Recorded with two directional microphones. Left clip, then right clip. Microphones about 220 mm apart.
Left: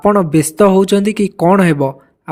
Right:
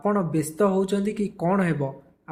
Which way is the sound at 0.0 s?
45° left (ahead or behind).